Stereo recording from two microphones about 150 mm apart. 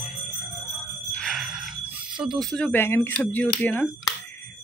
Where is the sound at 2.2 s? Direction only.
Centre (ahead or behind).